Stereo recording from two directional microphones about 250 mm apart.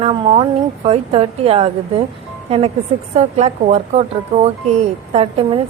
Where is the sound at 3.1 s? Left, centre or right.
Right.